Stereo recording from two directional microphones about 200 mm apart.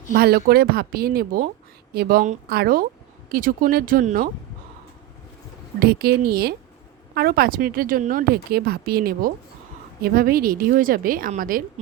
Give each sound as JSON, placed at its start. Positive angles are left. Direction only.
{"t": 0.1, "sound": "a woman's voice", "side_deg": -50}
{"t": 5.8, "sound": "a woman's voice", "side_deg": -50}